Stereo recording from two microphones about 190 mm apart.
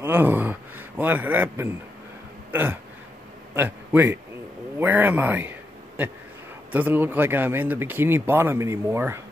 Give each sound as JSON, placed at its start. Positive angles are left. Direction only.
{"t": 0.0, "sound": "speech", "side_deg": -10}
{"t": 6.7, "sound": "speech", "side_deg": -10}